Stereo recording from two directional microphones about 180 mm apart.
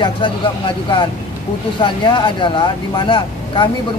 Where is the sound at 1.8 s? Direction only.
25° left (ahead or behind).